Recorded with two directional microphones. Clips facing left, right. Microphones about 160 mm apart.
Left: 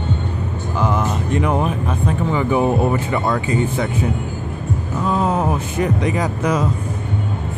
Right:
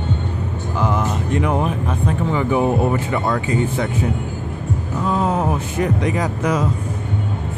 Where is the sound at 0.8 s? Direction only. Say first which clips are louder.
Left 1 dB; 20° left (ahead or behind).